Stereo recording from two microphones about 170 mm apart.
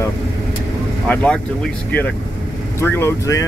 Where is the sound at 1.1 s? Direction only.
10° left (ahead or behind).